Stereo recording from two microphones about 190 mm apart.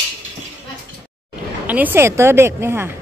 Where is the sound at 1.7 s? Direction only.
10° right (ahead or behind).